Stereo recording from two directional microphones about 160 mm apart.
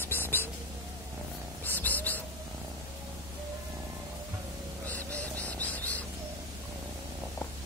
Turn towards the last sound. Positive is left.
turn(degrees=10)  # may be behind; listen again after turning